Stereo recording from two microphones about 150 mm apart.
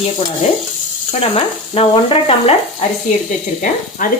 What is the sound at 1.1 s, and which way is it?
Speech, 40° left (ahead or behind).